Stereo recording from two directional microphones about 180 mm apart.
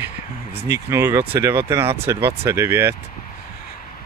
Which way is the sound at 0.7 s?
15° right (ahead or behind).